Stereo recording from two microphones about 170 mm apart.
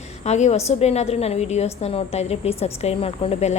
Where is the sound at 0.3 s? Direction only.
40° left (ahead or behind).